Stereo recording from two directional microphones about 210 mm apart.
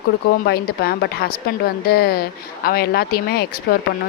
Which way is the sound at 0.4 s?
50° left (ahead or behind).